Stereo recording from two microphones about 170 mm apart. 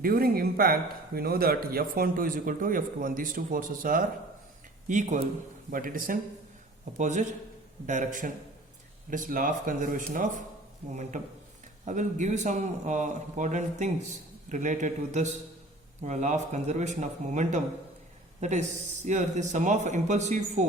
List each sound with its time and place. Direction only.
0.0 s a man's voice: 60° right (ahead or behind)
6.9 s a man's voice: 45° right (ahead or behind)